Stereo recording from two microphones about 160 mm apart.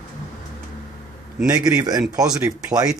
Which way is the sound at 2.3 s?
20° right (ahead or behind).